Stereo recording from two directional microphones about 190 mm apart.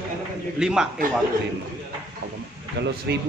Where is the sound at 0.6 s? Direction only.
5° right (ahead or behind).